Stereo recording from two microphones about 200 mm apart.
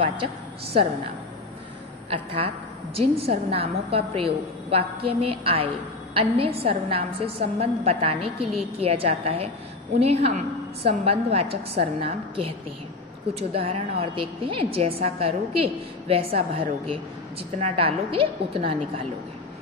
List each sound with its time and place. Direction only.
2.0 s a woman's voice: 30° right (ahead or behind)